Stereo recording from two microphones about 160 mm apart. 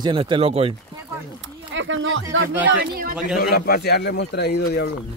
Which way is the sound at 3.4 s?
70° left (ahead or behind).